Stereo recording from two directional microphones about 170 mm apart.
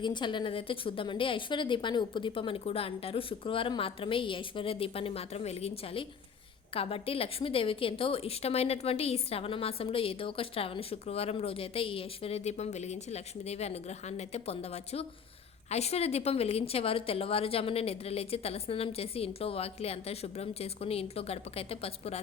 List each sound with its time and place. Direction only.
0.0 s a woman's voice: 25° left (ahead or behind)